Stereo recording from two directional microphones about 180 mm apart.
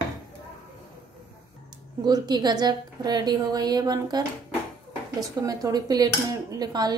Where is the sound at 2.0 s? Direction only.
25° right (ahead or behind).